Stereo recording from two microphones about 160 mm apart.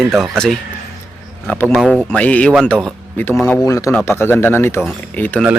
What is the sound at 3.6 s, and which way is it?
Speech, 20° left (ahead or behind).